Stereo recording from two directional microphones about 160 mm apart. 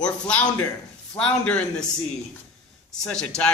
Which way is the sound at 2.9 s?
5° left (ahead or behind).